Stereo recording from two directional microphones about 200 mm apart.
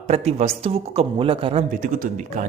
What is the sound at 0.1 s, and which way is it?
Speech, 30° right (ahead or behind).